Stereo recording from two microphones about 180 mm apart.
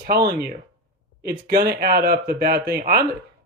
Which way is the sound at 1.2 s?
60° right (ahead or behind).